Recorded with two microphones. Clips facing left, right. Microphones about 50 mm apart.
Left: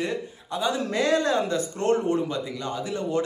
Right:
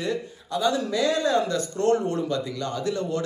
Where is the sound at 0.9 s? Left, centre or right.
Left.